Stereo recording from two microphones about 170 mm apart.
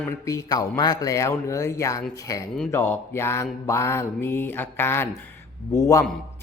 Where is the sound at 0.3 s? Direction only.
20° left (ahead or behind).